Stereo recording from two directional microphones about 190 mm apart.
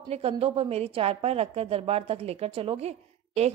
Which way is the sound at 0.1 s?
30° right (ahead or behind).